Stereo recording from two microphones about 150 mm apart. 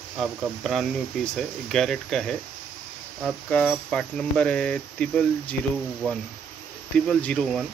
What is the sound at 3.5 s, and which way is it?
Speech, 5° left (ahead or behind).